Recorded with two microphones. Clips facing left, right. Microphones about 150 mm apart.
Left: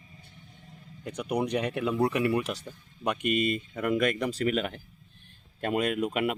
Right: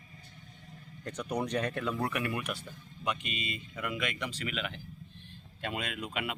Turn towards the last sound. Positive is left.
turn(degrees=45)  # may be behind; listen again after turning